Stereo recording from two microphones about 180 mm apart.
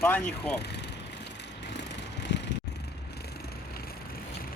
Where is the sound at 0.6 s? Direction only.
70° left (ahead or behind).